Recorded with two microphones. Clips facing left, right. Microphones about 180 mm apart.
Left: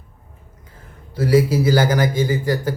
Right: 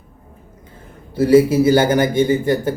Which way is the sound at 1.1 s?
25° right (ahead or behind).